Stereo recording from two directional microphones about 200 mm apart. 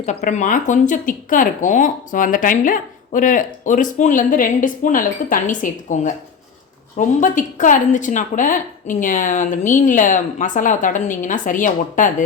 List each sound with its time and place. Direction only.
0.0 s speech: 35° left (ahead or behind)